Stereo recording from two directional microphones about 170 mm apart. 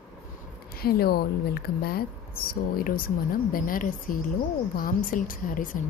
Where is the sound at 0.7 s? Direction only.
65° left (ahead or behind).